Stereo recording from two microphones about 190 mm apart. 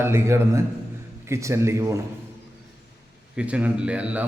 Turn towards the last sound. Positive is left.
turn(degrees=-5)  # may be behind; listen again after turning